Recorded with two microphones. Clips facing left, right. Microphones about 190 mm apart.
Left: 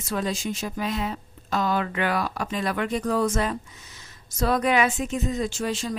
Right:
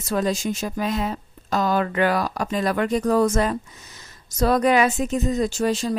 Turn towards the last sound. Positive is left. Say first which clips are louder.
# right 5 dB
turn(degrees=-40)  # may be behind; listen again after turning